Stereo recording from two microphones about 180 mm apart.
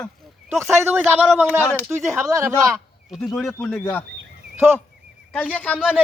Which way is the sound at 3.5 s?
10° left (ahead or behind).